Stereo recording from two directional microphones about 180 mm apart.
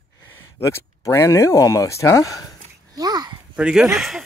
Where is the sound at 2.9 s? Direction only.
20° right (ahead or behind).